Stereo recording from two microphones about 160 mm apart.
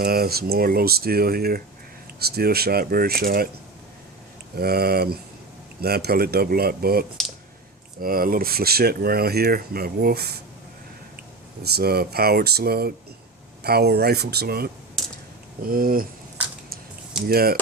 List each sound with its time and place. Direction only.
0.0 s speech: 70° right (ahead or behind)
4.5 s speech: 75° right (ahead or behind)
8.0 s speech: 65° right (ahead or behind)
11.6 s speech: 80° right; by 16.0 s 65° right (ahead or behind)
17.2 s speech: 70° right (ahead or behind)